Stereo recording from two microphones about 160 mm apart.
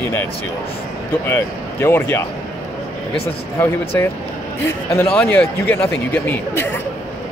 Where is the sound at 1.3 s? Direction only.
15° left (ahead or behind).